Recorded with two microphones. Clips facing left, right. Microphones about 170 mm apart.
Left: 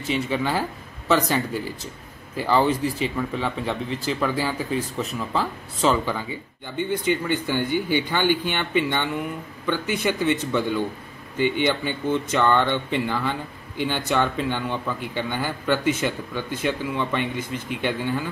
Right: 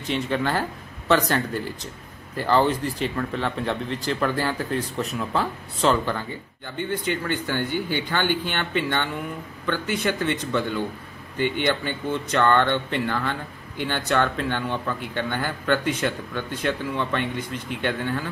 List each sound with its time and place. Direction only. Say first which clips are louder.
0.0 s speech: even; 5° left (ahead or behind)
11.3 s a man's voice: left 2 dB; 50° right (ahead or behind)
11.6 s speech: left 1 dB; 10° left (ahead or behind)